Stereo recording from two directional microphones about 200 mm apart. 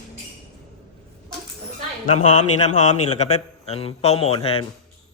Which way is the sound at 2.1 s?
35° left (ahead or behind).